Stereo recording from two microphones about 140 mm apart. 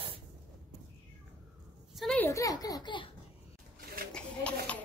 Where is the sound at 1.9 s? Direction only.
Centre (ahead or behind).